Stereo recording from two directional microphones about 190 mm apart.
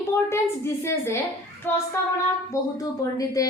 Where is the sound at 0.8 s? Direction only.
15° left (ahead or behind).